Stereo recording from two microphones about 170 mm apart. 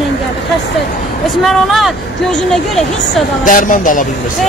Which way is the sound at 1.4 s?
Centre (ahead or behind).